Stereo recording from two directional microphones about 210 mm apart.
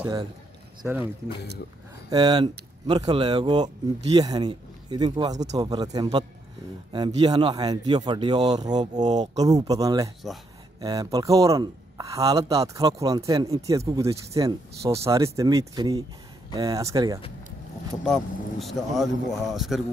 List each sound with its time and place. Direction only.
2.0 s speech: 20° right (ahead or behind)
7.2 s speech: 20° right (ahead or behind)
18.0 s speech: centre (ahead or behind)